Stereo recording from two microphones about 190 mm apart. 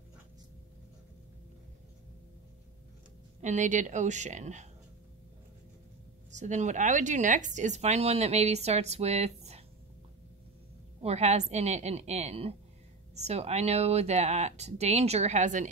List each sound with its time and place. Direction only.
3.3 s speech: 40° right (ahead or behind)
6.3 s speech: 40° right (ahead or behind)
11.0 s speech: 35° right (ahead or behind)